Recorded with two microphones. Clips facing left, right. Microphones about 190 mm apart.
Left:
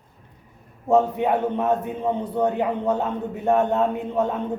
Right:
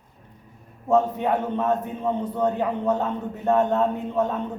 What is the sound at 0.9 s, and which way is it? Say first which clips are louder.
A man's voice: left 2 dB; 15° left (ahead or behind).